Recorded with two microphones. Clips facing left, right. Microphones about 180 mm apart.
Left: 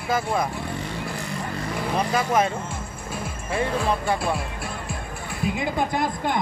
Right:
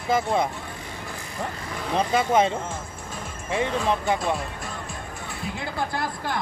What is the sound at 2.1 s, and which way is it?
Speech, 25° right (ahead or behind).